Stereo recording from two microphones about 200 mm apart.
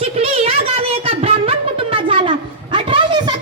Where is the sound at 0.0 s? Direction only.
30° right (ahead or behind).